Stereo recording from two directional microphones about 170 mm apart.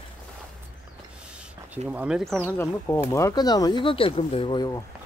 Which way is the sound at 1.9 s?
5° right (ahead or behind).